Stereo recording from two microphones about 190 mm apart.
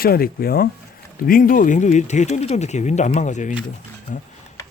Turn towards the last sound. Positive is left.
turn(degrees=45)  # may be behind; listen again after turning